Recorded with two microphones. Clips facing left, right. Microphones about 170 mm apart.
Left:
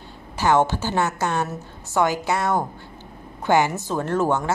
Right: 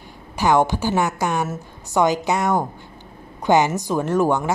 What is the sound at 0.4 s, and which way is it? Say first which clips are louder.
A woman's voice: right 2 dB; 15° right (ahead or behind).